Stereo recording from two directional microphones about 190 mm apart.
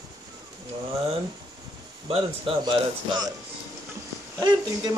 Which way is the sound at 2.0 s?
30° right (ahead or behind).